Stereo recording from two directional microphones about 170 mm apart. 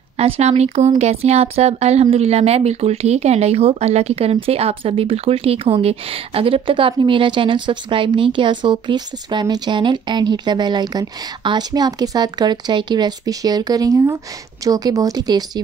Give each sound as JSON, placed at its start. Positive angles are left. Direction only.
{"t": 0.2, "sound": "speech", "side_deg": -40}